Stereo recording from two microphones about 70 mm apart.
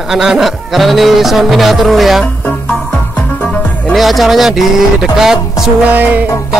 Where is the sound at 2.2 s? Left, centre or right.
Left.